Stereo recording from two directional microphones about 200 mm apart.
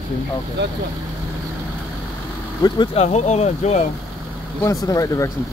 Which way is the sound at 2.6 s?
25° left (ahead or behind).